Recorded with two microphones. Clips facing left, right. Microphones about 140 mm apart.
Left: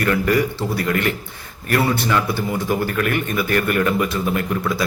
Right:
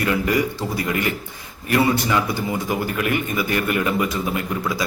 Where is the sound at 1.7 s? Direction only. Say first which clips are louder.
Even; 15° right (ahead or behind).